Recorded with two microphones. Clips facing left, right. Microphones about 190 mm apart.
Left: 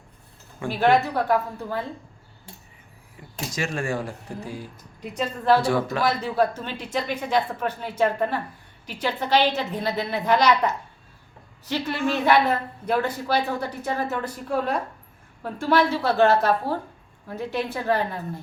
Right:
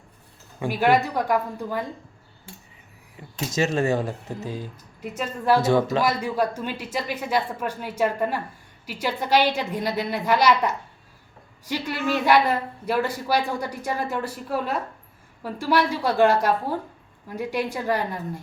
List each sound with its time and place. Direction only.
0.6 s speech: 10° right (ahead or behind)
3.2 s a sound: 25° right (ahead or behind)
3.5 s speech: 25° right (ahead or behind)
6.0 s speech: 10° right (ahead or behind)